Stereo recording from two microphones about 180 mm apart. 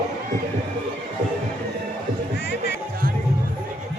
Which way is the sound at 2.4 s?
70° left (ahead or behind).